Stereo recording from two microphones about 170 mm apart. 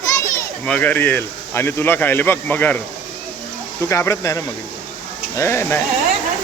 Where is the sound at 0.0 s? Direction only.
15° left (ahead or behind).